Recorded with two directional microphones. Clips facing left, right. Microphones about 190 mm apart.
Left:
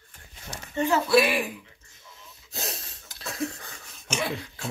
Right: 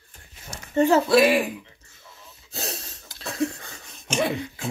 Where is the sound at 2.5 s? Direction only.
30° right (ahead or behind).